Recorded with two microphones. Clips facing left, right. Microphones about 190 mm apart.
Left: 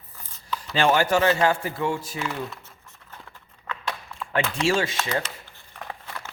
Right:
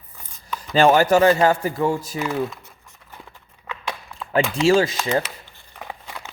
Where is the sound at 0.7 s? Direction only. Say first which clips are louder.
Right 6 dB; 40° right (ahead or behind).